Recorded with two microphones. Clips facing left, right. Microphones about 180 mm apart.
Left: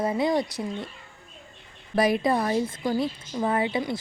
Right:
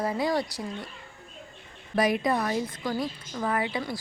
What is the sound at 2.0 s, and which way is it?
A woman's voice, 30° left (ahead or behind).